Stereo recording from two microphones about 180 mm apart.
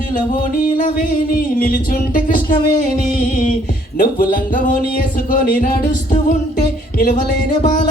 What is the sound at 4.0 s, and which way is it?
Music, 50° left (ahead or behind).